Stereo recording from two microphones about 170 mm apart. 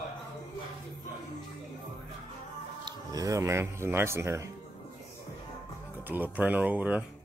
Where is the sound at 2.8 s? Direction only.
20° right (ahead or behind).